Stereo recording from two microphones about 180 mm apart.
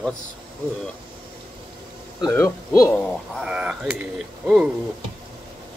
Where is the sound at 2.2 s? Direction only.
15° left (ahead or behind).